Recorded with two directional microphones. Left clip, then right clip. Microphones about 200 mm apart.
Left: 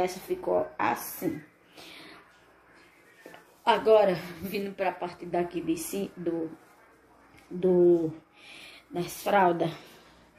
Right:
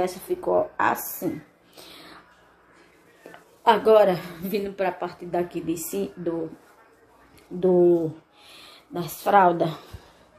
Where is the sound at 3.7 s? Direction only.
20° right (ahead or behind).